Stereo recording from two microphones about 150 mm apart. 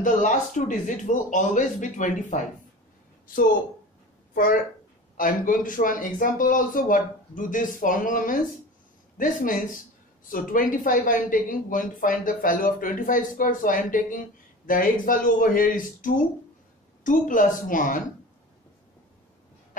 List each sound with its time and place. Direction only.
0.0 s speech: 55° left (ahead or behind)
4.3 s speech: 65° left (ahead or behind)